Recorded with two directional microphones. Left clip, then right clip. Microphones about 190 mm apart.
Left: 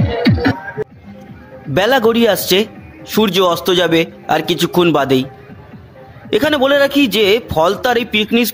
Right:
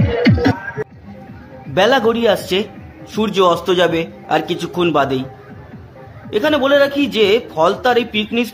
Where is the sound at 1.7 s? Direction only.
25° left (ahead or behind).